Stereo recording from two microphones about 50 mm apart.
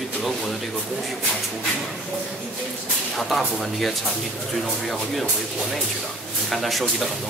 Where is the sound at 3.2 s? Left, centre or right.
Centre.